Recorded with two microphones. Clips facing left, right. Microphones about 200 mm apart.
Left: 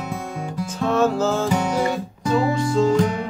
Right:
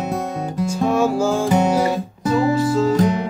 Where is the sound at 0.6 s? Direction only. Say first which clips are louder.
Right 2 dB; 10° right (ahead or behind).